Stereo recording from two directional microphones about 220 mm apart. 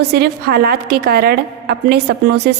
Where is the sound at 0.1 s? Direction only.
45° right (ahead or behind).